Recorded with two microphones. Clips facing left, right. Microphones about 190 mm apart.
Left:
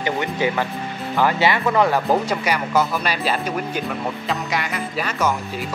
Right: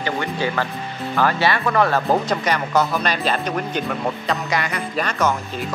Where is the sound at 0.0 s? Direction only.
20° left (ahead or behind).